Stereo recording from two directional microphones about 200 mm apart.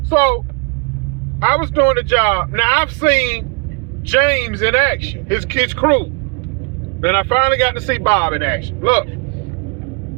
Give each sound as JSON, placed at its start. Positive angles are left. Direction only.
{"t": 1.4, "sound": "a man's voice", "side_deg": 15}
{"t": 7.0, "sound": "a man's voice", "side_deg": 15}